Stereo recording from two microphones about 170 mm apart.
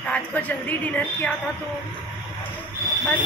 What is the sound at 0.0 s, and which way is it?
A woman's voice, 10° left (ahead or behind).